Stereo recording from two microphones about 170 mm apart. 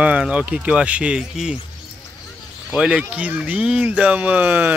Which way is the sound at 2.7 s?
5° right (ahead or behind).